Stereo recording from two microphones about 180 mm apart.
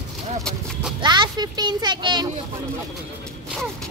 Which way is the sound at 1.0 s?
25° right (ahead or behind).